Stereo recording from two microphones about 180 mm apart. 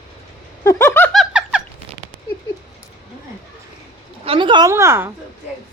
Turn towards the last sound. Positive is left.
turn(degrees=-15)  # may be behind; listen again after turning